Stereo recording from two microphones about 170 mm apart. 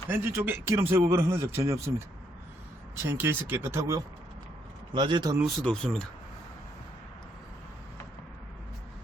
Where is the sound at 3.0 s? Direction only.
15° right (ahead or behind).